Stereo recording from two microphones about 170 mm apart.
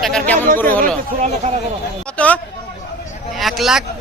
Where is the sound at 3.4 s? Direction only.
Centre (ahead or behind).